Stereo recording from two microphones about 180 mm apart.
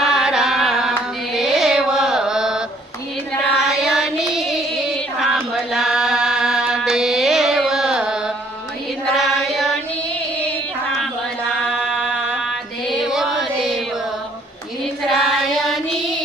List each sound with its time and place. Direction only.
0.0 s carnatic music: centre (ahead or behind)
3.7 s child singing: centre (ahead or behind)
5.2 s chant: centre (ahead or behind)
9.1 s a sound: centre (ahead or behind)
12.9 s music: centre (ahead or behind)
15.0 s child singing: centre (ahead or behind)